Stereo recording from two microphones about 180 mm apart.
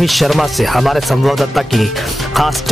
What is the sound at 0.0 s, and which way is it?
A woman's voice, centre (ahead or behind).